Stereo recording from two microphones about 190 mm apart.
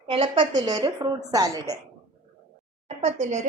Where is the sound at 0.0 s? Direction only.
30° right (ahead or behind).